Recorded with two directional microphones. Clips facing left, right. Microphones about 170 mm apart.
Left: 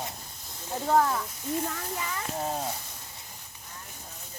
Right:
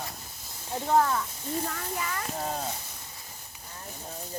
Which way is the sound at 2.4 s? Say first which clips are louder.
Left 2 dB; 5° left (ahead or behind).